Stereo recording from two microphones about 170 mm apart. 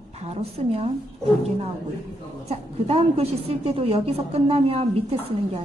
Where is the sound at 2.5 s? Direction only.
35° right (ahead or behind).